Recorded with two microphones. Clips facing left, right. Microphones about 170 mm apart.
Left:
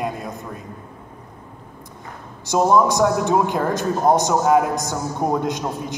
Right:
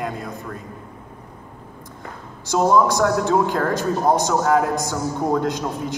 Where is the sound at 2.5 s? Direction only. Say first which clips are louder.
Left 1 dB; 20° left (ahead or behind).